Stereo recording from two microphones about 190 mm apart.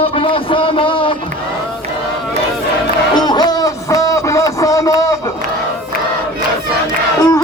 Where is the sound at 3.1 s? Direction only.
20° left (ahead or behind).